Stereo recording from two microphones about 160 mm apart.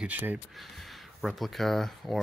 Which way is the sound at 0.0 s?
10° right (ahead or behind).